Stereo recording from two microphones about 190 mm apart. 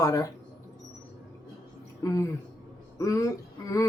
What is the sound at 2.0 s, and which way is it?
Speech, 15° left (ahead or behind).